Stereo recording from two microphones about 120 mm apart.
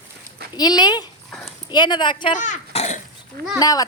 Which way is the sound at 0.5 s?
35° left (ahead or behind).